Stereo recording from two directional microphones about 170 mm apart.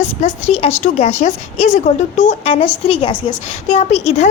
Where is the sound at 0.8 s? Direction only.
45° left (ahead or behind).